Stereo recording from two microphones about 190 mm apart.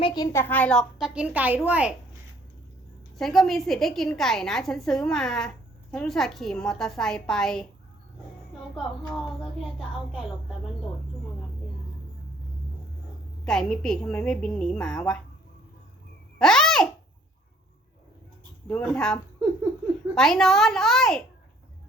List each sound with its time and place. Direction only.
0.0 s a child's voice: 20° left (ahead or behind)
0.4 s a woman's voice: 10° left (ahead or behind)
3.2 s a woman's voice: centre (ahead or behind)
8.7 s a woman's voice: centre (ahead or behind)
13.4 s a woman's voice: 5° left (ahead or behind)
16.4 s babbling: 5° left (ahead or behind)
18.7 s a woman's voice: 5° left (ahead or behind)